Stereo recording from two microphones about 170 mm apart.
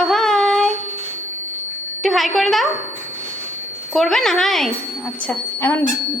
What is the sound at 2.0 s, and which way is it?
Speech, centre (ahead or behind).